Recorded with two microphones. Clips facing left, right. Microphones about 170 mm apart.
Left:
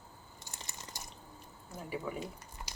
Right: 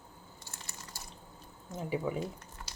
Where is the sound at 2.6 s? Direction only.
15° left (ahead or behind).